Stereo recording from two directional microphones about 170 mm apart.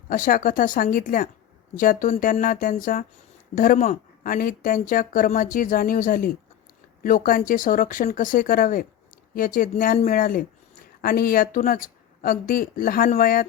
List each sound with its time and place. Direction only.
0.1 s a woman's voice: 55° left (ahead or behind)